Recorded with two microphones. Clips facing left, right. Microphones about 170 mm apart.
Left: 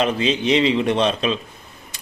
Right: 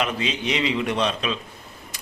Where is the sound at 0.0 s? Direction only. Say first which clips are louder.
Left 6 dB; 30° left (ahead or behind).